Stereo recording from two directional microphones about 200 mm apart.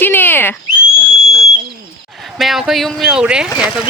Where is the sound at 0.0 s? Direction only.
10° left (ahead or behind).